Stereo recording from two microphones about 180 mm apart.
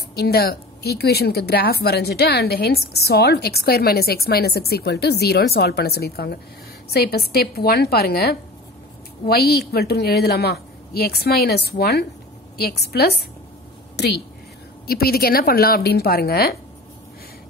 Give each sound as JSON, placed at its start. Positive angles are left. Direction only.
{"t": 0.1, "sound": "a woman's voice", "side_deg": 60}